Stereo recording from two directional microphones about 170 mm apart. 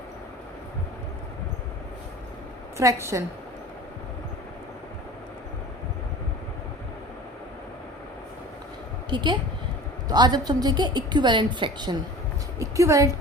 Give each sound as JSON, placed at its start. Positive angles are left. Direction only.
{"t": 2.7, "sound": "a woman's voice", "side_deg": -15}
{"t": 9.0, "sound": "a woman's voice", "side_deg": -25}